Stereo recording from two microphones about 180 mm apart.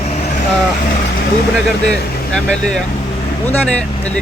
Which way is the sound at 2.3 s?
5° left (ahead or behind).